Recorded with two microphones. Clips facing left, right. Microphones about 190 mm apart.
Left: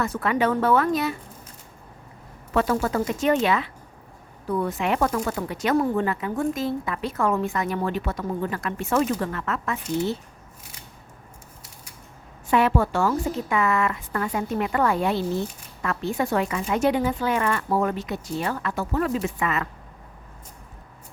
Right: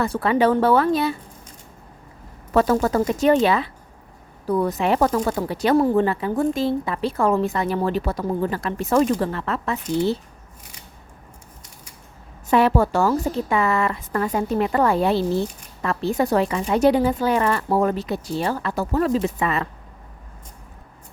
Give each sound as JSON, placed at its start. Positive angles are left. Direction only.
{"t": 0.0, "sound": "a woman's voice", "side_deg": -30}
{"t": 2.5, "sound": "a woman's voice", "side_deg": -40}
{"t": 12.5, "sound": "a woman's voice", "side_deg": -35}